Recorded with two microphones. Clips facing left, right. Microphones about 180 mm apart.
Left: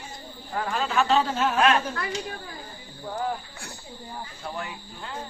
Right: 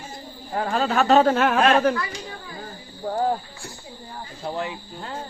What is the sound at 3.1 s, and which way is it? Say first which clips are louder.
Speech: right 7 dB; 40° right (ahead or behind).